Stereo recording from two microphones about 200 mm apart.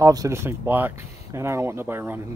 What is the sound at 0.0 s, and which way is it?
Speech, 15° right (ahead or behind).